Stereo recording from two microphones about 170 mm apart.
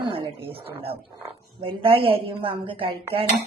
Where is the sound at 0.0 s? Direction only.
30° right (ahead or behind).